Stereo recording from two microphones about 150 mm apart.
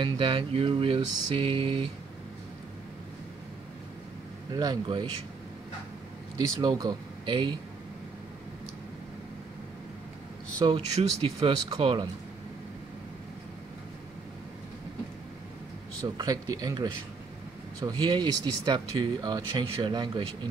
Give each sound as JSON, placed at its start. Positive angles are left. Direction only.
{"t": 0.0, "sound": "a sound", "side_deg": -35}
{"t": 4.6, "sound": "speech", "side_deg": -25}
{"t": 6.3, "sound": "speech", "side_deg": -25}
{"t": 10.6, "sound": "a sound", "side_deg": -30}
{"t": 11.3, "sound": "speech", "side_deg": -30}
{"t": 16.0, "sound": "speech", "side_deg": -25}